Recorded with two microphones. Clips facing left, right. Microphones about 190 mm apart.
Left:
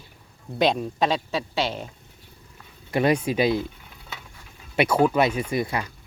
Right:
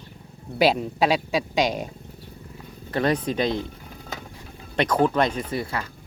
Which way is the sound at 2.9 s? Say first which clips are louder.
Left 2 dB; 10° left (ahead or behind).